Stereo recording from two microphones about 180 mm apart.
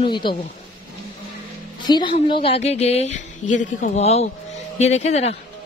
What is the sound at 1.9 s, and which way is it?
A woman's voice, 25° left (ahead or behind).